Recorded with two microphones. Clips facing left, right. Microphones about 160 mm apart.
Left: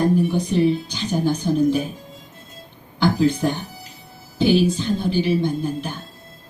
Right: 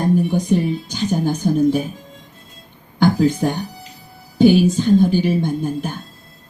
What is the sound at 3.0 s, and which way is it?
Speech, 45° right (ahead or behind).